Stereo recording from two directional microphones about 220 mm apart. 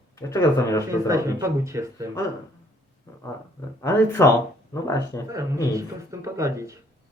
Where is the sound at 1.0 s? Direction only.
15° right (ahead or behind).